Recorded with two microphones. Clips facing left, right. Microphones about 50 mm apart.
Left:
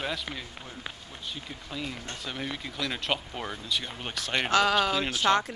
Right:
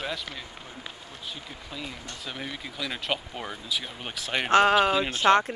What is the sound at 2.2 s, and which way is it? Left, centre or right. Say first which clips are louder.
Speech: even; centre.